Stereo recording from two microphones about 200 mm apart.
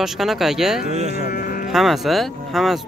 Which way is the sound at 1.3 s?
45° left (ahead or behind).